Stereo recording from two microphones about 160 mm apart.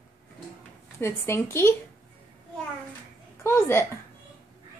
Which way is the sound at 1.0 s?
15° left (ahead or behind).